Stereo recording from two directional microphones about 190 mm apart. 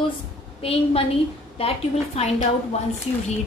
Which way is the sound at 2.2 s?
35° left (ahead or behind).